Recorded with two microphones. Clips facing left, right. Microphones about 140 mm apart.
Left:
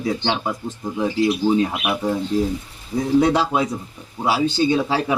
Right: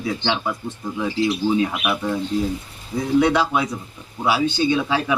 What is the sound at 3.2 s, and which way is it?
Speech, 35° left (ahead or behind).